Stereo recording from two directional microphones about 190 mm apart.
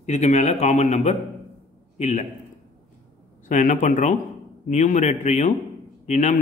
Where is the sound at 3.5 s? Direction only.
40° left (ahead or behind).